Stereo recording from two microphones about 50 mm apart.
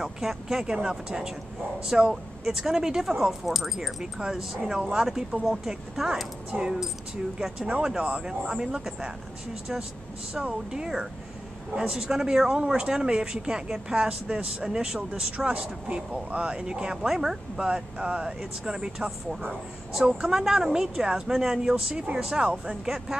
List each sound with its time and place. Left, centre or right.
0.0 s speech: centre
10.3 s speech: centre
17.1 s speech: centre
17.6 s speech: right